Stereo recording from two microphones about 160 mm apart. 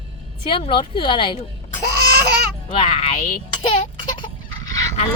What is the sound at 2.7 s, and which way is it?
Speech, 35° left (ahead or behind).